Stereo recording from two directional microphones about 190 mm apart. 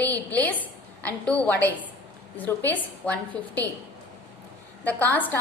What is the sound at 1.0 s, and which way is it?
A woman's voice, 5° left (ahead or behind).